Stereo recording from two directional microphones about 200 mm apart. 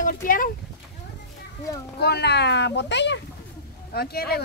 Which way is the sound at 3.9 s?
50° left (ahead or behind).